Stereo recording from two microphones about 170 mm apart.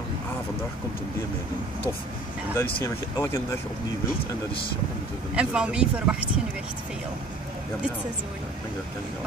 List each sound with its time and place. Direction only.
2.5 s speech: 15° left (ahead or behind)
5.3 s speech: 5° right (ahead or behind)